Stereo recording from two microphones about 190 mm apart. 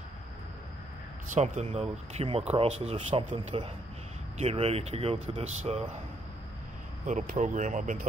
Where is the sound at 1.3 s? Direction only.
35° right (ahead or behind).